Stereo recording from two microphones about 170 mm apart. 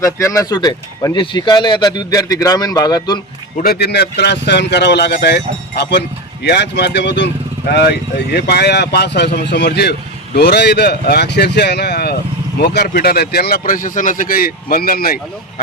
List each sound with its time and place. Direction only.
0.0 s speech: 20° left (ahead or behind)
3.6 s speech: 65° left (ahead or behind); by 7.1 s 90° left
7.7 s speech: 75° left (ahead or behind)